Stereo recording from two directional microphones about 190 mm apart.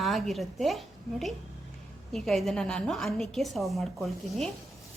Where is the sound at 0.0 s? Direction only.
Centre (ahead or behind).